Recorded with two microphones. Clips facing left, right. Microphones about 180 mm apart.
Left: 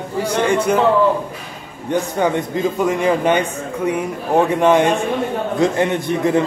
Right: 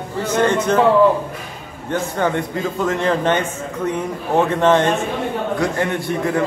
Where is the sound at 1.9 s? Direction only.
15° left (ahead or behind).